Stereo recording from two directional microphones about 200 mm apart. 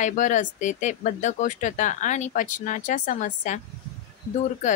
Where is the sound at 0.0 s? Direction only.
40° left (ahead or behind).